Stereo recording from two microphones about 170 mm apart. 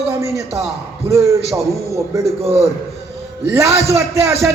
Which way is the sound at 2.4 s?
35° right (ahead or behind).